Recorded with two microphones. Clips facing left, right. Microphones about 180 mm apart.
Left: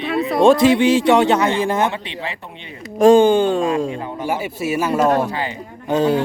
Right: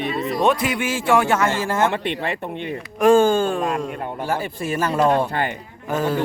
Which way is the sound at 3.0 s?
15° left (ahead or behind).